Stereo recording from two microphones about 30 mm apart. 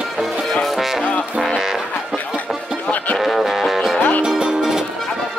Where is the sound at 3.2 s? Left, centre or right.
Centre.